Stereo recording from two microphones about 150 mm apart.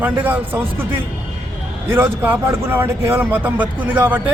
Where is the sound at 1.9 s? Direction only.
15° right (ahead or behind).